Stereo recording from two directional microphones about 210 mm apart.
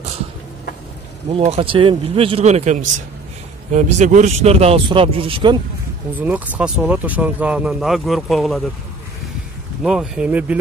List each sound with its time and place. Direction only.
1.3 s speech: 30° right (ahead or behind)
6.1 s speech: 5° right (ahead or behind)
9.8 s speech: 5° right (ahead or behind)